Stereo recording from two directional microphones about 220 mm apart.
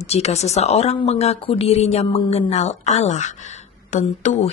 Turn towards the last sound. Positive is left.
turn(degrees=30)  # may be behind; listen again after turning